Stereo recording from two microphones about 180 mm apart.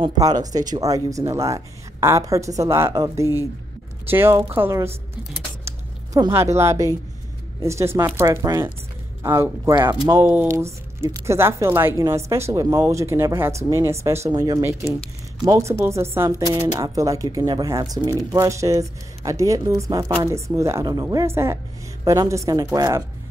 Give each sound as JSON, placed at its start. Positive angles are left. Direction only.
{"t": 0.0, "sound": "a woman's voice", "side_deg": -20}